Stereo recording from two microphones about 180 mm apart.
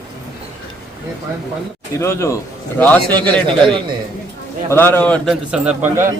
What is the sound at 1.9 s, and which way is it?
Speech, 15° left (ahead or behind).